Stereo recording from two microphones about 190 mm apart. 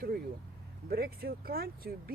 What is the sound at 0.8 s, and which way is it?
Speech, 55° right (ahead or behind).